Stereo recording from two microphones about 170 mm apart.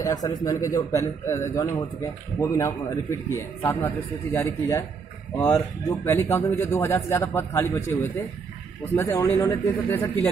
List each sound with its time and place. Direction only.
0.0 s speech: 20° left (ahead or behind)